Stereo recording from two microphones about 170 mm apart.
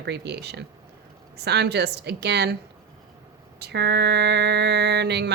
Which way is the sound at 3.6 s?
80° right.